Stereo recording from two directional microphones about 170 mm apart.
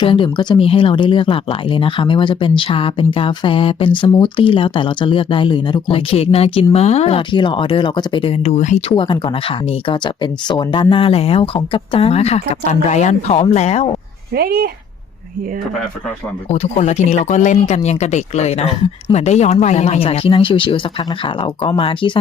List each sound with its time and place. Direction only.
0.0 s speech: 30° left (ahead or behind)
8.9 s speech: 30° left (ahead or behind)
10.5 s speech: 25° left (ahead or behind)
14.3 s speech: 65° right (ahead or behind)
16.5 s speech: 40° left (ahead or behind)